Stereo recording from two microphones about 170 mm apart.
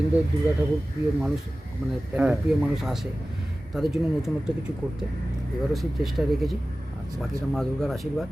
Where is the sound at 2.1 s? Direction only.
5° right (ahead or behind).